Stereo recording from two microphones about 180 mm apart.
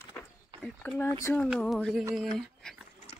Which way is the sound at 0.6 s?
10° left (ahead or behind).